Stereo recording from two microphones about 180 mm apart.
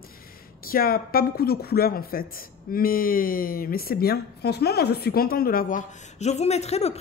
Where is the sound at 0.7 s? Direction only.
55° left (ahead or behind).